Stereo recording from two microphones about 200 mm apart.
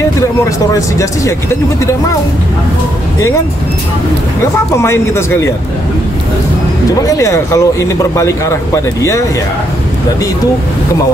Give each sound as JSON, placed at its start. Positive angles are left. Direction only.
{"t": 0.7, "sound": "speech", "side_deg": 15}
{"t": 4.7, "sound": "speech", "side_deg": 15}
{"t": 7.1, "sound": "speech", "side_deg": 15}